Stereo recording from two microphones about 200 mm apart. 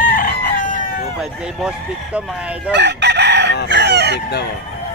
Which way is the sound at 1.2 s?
5° right (ahead or behind).